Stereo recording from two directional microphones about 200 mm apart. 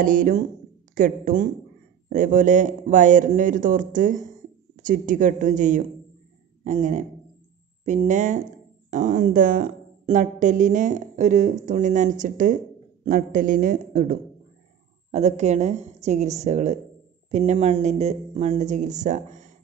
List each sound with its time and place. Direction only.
0.0 s a woman's voice: 40° right (ahead or behind)